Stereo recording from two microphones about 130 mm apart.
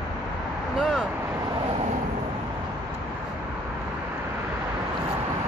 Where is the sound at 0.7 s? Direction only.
Centre (ahead or behind).